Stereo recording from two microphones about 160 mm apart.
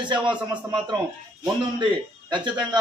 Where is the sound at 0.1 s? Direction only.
30° right (ahead or behind).